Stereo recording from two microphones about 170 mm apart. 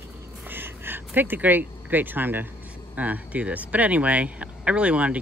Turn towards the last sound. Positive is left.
turn(degrees=-5)  # may be behind; listen again after turning